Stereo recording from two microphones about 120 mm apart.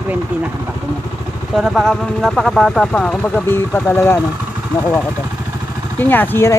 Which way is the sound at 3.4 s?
20° left (ahead or behind).